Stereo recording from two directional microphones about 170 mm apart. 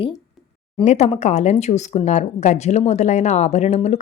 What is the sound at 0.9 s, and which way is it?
Speech, 40° left (ahead or behind).